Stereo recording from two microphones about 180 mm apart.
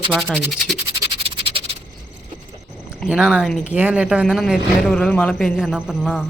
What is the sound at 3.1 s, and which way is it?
Speech, centre (ahead or behind).